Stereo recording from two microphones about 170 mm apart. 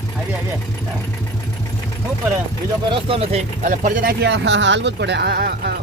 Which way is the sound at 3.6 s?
50° right (ahead or behind).